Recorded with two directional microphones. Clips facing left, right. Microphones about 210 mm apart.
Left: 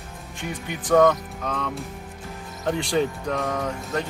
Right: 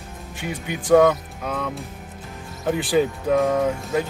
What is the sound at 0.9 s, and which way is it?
Speech, 10° right (ahead or behind).